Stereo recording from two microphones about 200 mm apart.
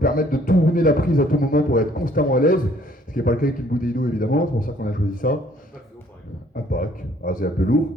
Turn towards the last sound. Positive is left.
turn(degrees=45)  # may be behind; listen again after turning